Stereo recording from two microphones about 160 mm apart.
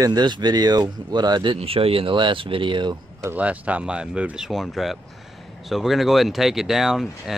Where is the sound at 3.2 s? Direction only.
10° right (ahead or behind).